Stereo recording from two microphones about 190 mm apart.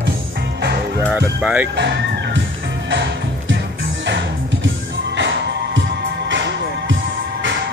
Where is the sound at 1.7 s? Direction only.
65° right (ahead or behind).